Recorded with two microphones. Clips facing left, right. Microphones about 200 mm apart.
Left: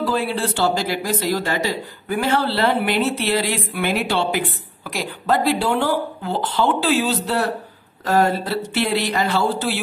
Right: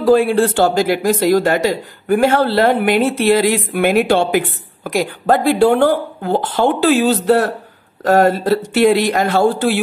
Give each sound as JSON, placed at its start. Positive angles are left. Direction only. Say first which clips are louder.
{"t": 0.0, "sound": "speech", "louder": "right 10 dB", "side_deg": -45}